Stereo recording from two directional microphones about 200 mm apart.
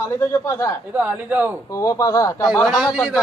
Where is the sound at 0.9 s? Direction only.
10° right (ahead or behind).